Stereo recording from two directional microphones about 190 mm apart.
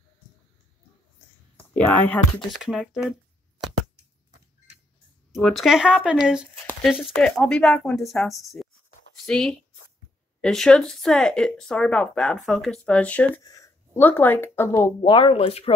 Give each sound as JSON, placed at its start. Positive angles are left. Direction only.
{"t": 1.8, "sound": "speech", "side_deg": 10}
{"t": 2.6, "sound": "a sound", "side_deg": -5}
{"t": 5.3, "sound": "speech", "side_deg": 0}
{"t": 6.6, "sound": "a sound", "side_deg": 10}
{"t": 6.9, "sound": "speech", "side_deg": 0}
{"t": 13.4, "sound": "speech", "side_deg": 20}
{"t": 15.0, "sound": "speech", "side_deg": 25}